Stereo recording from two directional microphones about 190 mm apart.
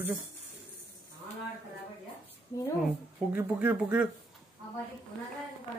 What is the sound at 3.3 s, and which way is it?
Speech, 10° right (ahead or behind).